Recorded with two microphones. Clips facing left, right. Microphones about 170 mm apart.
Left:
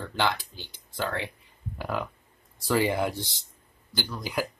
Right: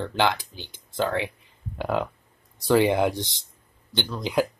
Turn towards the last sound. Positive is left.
turn(degrees=-25)  # may be behind; listen again after turning